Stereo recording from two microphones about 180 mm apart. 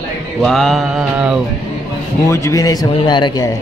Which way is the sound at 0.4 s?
Centre (ahead or behind).